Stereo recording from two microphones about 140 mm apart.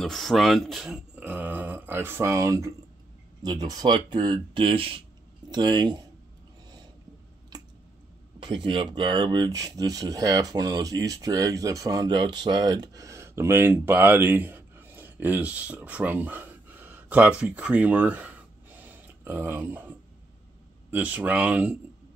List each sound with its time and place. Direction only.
0.0 s speech: centre (ahead or behind); by 6.0 s 30° right (ahead or behind)
7.5 s a sound: 30° right (ahead or behind)
8.4 s speech: 35° right (ahead or behind); by 21.7 s 10° right (ahead or behind)